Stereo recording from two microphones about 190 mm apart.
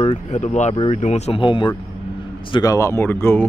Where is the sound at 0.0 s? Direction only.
35° left (ahead or behind).